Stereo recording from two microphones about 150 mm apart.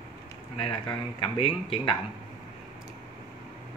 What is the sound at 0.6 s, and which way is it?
Speech, 35° left (ahead or behind).